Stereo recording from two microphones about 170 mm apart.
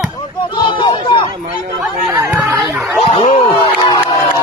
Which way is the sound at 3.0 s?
35° left (ahead or behind).